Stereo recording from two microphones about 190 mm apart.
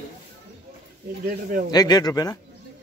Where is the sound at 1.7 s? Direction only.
20° left (ahead or behind).